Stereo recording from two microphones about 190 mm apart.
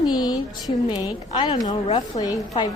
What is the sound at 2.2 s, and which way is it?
Speech, 20° left (ahead or behind).